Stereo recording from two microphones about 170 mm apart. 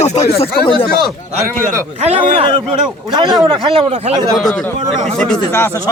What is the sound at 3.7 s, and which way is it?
Speech, 35° right (ahead or behind).